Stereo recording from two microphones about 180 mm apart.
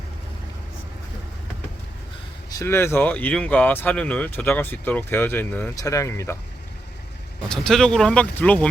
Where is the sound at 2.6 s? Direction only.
15° left (ahead or behind).